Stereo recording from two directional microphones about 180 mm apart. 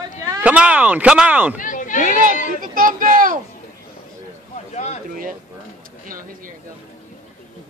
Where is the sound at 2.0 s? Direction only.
50° right (ahead or behind).